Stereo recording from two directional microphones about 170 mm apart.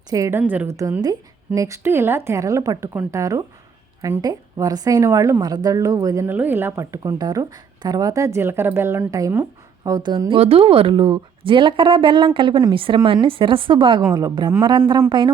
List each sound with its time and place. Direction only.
0.1 s a woman's voice: 15° right (ahead or behind)